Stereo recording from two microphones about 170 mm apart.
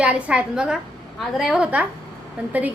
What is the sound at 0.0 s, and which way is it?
A woman's voice, 5° right (ahead or behind).